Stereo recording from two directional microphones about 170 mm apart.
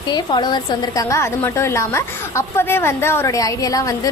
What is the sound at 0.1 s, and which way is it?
A woman's voice, 25° left (ahead or behind).